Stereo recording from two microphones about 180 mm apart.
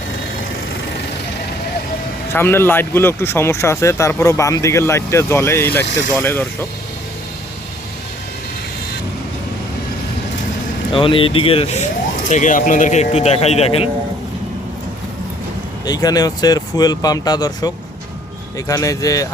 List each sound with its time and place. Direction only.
2.3 s speech: 15° left (ahead or behind)
10.9 s speech: 30° left (ahead or behind)
15.9 s speech: 20° left (ahead or behind)
18.7 s speech: 20° left (ahead or behind)